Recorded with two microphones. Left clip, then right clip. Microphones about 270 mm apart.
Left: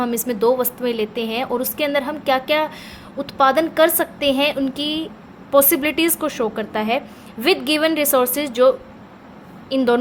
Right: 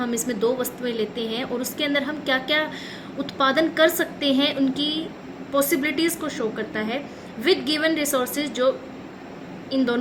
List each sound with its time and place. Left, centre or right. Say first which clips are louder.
0.0 s a woman's voice: left 5 dB; left